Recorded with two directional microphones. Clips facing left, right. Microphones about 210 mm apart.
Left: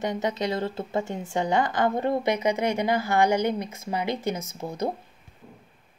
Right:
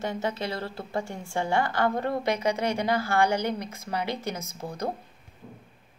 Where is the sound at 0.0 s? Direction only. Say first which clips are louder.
Left 3 dB; 15° left (ahead or behind).